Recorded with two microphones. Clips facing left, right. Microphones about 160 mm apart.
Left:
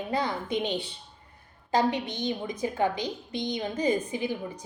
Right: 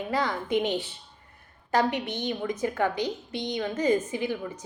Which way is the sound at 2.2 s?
15° left (ahead or behind).